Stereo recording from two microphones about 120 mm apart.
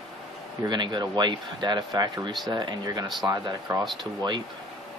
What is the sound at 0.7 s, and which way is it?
Speech, 40° right (ahead or behind).